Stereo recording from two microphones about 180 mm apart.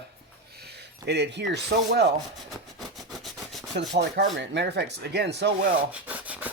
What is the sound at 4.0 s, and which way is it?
Speech, 75° right (ahead or behind).